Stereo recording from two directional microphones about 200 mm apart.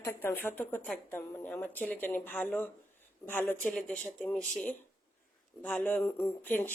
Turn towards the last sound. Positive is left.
turn(degrees=10)  # may be behind; listen again after turning